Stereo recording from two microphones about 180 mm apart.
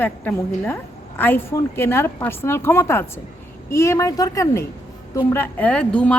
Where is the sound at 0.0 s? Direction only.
10° left (ahead or behind).